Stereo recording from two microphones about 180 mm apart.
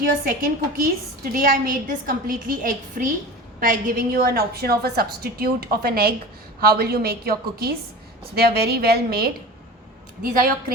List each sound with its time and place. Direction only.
0.0 s a woman's voice: 50° right (ahead or behind)